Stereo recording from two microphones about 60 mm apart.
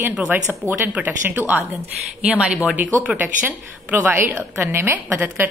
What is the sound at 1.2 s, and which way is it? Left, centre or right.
Speech, right.